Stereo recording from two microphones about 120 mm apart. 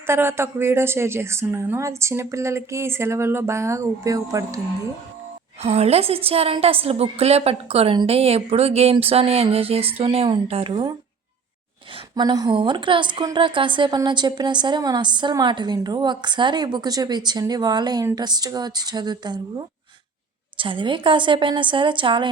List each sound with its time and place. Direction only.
0.1 s a woman's voice: 20° right (ahead or behind)
5.6 s speech: 60° right (ahead or behind)
12.1 s a woman's voice: 35° right (ahead or behind)